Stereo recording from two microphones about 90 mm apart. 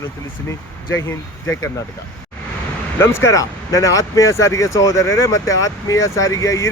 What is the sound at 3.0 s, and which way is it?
Speech, 30° left (ahead or behind).